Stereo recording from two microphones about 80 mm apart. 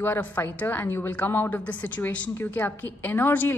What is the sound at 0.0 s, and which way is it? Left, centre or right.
A woman's voice, left.